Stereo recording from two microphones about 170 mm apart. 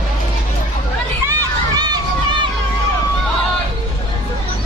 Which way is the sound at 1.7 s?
25° right (ahead or behind).